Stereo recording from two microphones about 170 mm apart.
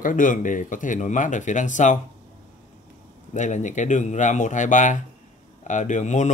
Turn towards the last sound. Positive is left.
turn(degrees=45)  # may be behind; listen again after turning